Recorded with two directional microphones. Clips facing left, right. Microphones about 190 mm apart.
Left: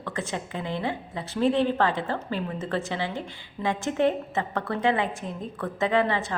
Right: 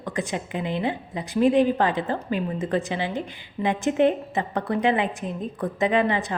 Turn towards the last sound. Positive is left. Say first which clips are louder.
# right 2 dB
turn(degrees=-15)  # may be behind; listen again after turning